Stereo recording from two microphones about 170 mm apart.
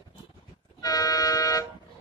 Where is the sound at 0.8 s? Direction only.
20° left (ahead or behind).